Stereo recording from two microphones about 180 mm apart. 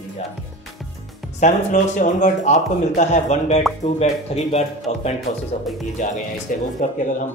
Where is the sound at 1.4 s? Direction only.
45° left (ahead or behind).